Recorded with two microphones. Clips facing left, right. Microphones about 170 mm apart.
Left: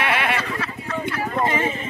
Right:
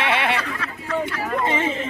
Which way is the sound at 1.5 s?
25° right (ahead or behind).